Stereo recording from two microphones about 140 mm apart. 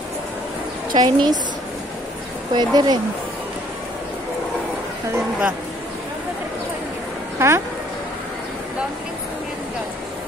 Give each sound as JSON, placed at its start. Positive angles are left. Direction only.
{"t": 0.9, "sound": "a woman's voice", "side_deg": -30}
{"t": 2.5, "sound": "speech", "side_deg": -30}
{"t": 7.3, "sound": "speech", "side_deg": -20}